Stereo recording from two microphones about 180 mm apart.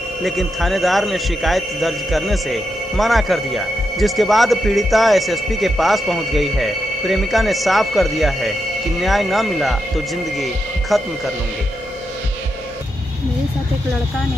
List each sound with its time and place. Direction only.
0.2 s a man's voice: centre (ahead or behind)